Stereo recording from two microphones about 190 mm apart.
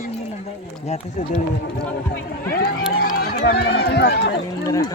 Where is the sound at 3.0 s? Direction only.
55° left (ahead or behind).